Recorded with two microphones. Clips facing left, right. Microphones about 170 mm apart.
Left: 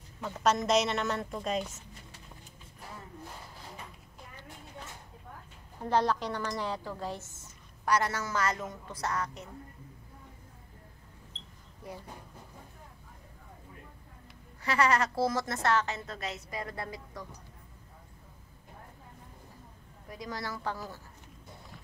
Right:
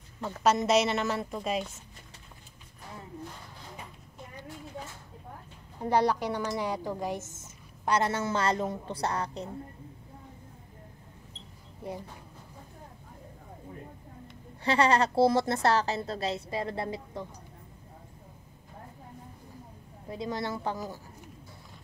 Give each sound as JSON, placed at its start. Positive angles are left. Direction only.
{"t": 0.2, "sound": "a woman's voice", "side_deg": -5}
{"t": 5.8, "sound": "a woman's voice", "side_deg": -15}
{"t": 11.8, "sound": "a woman's voice", "side_deg": -25}
{"t": 14.6, "sound": "a woman's voice", "side_deg": -30}
{"t": 20.1, "sound": "a woman's voice", "side_deg": -25}